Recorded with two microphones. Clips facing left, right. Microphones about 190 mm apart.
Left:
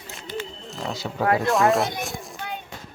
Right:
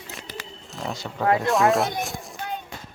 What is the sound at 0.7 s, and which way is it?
A child's voice, centre (ahead or behind).